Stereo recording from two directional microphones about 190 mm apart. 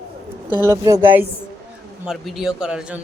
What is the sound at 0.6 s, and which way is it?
Speech, 15° right (ahead or behind).